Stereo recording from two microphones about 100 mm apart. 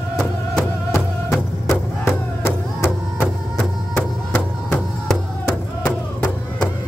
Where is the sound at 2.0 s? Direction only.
25° left (ahead or behind).